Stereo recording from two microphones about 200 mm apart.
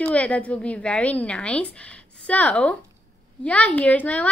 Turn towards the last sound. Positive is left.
turn(degrees=5)  # may be behind; listen again after turning